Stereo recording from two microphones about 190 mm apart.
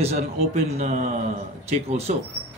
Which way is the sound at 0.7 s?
40° right (ahead or behind).